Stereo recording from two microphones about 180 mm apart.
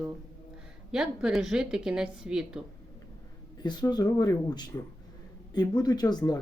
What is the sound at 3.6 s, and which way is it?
Speech, 25° left (ahead or behind).